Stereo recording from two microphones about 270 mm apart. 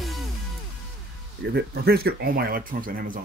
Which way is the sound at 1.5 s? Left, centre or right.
Right.